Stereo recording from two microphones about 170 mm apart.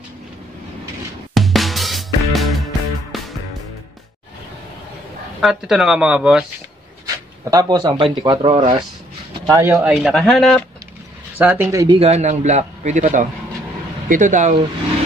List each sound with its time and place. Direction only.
1.3 s music: centre (ahead or behind)
5.4 s speech: centre (ahead or behind)
7.4 s speech: 20° right (ahead or behind)
9.5 s speech: 15° right (ahead or behind)
9.8 s speech: centre (ahead or behind)
11.3 s speech: 10° right (ahead or behind)
12.0 s a man's voice: 40° right (ahead or behind)